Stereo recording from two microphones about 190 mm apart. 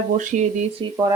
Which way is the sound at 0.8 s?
25° right (ahead or behind).